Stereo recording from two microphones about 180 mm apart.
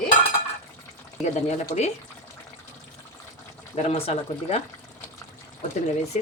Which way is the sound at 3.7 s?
35° left (ahead or behind).